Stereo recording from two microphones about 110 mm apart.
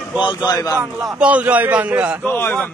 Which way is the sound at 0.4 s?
30° left (ahead or behind).